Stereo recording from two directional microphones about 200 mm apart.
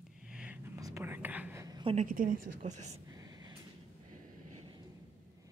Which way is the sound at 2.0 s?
45° right (ahead or behind).